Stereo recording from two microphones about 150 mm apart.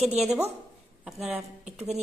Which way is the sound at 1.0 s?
Centre (ahead or behind).